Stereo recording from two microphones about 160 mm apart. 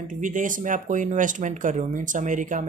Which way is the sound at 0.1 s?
55° right (ahead or behind).